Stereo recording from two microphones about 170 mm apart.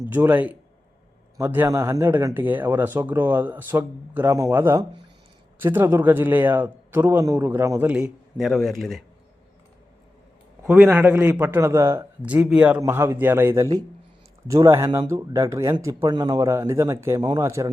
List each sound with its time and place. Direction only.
0.1 s a man's voice: 10° right (ahead or behind)
10.7 s speech: 10° right (ahead or behind)